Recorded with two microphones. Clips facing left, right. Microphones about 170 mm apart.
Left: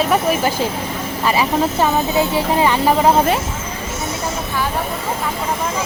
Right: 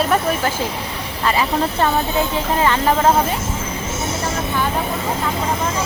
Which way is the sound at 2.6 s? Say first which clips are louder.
Left 1 dB; 15° left (ahead or behind).